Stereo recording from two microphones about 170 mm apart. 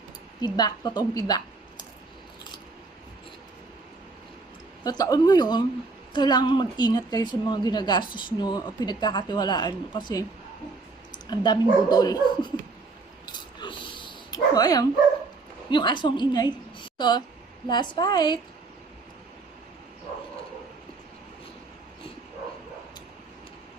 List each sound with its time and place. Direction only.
0.4 s a woman's voice: 25° left (ahead or behind)
4.8 s a woman's voice: 25° left (ahead or behind)
11.3 s a woman's voice: 25° left (ahead or behind)
13.2 s a sound: 25° left (ahead or behind)
15.7 s a woman's voice: 25° left (ahead or behind)